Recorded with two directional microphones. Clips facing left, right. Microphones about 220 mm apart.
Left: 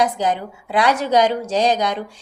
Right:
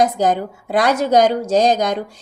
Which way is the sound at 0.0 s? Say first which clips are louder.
Right 3 dB; 45° right (ahead or behind).